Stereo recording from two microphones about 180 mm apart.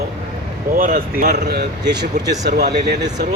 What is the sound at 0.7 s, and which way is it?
Speech, 50° right (ahead or behind).